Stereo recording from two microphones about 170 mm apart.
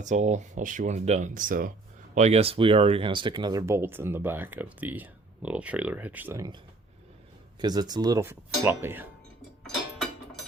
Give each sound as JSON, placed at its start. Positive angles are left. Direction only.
{"t": 0.0, "sound": "speech", "side_deg": -45}
{"t": 2.1, "sound": "speech", "side_deg": -40}
{"t": 7.6, "sound": "speech", "side_deg": -25}